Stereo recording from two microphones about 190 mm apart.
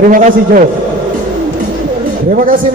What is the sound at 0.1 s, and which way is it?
Speech, 45° right (ahead or behind).